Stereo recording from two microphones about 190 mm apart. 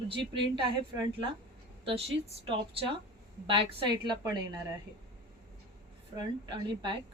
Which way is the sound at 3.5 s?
25° right (ahead or behind).